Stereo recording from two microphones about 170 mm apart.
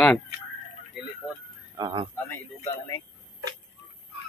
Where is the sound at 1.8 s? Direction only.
25° right (ahead or behind).